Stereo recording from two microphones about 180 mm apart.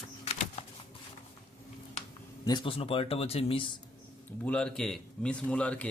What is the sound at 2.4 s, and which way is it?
Speech, 25° left (ahead or behind).